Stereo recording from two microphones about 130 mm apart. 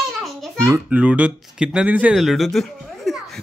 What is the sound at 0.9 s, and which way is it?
Speech, 10° right (ahead or behind).